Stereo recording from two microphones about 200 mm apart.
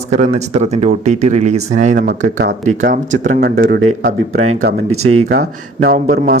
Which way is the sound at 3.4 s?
50° right (ahead or behind).